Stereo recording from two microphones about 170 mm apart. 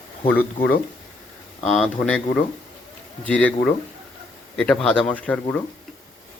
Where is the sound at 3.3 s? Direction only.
10° left (ahead or behind).